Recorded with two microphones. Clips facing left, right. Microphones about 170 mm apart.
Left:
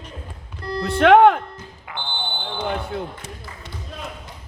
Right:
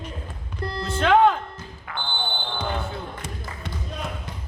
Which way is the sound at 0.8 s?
65° left (ahead or behind).